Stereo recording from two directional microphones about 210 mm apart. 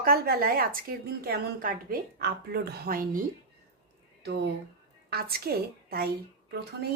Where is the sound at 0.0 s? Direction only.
45° right (ahead or behind).